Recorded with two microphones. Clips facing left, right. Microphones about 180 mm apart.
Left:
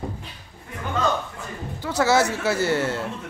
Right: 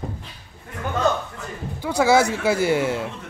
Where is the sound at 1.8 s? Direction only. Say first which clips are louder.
Right 2 dB; 10° right (ahead or behind).